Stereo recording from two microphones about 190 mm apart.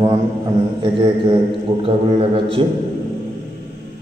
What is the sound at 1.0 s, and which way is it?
A man's voice, 30° right (ahead or behind).